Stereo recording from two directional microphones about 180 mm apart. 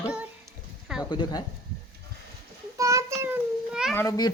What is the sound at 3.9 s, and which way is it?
Speech, 15° left (ahead or behind).